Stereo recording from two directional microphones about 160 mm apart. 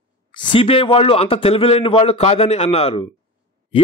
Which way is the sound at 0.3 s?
30° left (ahead or behind).